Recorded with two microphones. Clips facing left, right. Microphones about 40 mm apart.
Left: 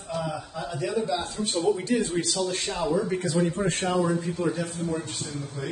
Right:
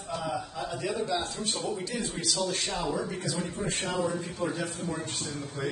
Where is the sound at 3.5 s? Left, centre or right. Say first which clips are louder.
Left 5 dB; left.